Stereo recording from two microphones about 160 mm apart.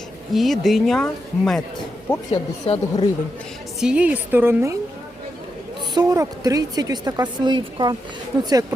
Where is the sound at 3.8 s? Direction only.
5° right (ahead or behind).